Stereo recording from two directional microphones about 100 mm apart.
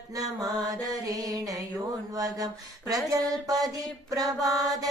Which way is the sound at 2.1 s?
40° right (ahead or behind).